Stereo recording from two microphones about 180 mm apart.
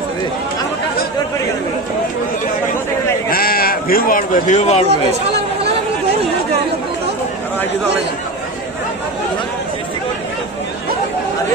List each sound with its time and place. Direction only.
3.3 s bleat: 55° left (ahead or behind); by 4.8 s 40° left (ahead or behind)